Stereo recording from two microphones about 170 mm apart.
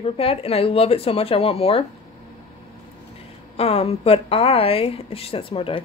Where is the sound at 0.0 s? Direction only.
35° left (ahead or behind).